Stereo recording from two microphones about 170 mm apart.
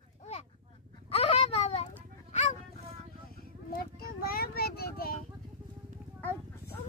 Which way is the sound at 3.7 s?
60° left (ahead or behind).